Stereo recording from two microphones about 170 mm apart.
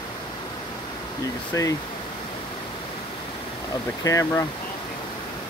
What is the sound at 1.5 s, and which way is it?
Speech, 20° left (ahead or behind).